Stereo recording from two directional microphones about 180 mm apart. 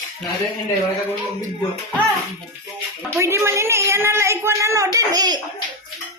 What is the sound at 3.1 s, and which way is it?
A woman's voice, 15° right (ahead or behind).